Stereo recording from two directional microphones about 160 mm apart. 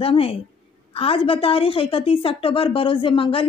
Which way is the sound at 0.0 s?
35° left (ahead or behind).